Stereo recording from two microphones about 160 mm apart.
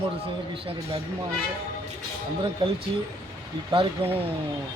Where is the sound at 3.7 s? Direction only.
35° right (ahead or behind).